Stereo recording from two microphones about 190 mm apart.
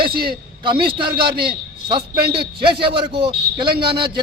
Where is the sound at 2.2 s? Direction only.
55° right (ahead or behind).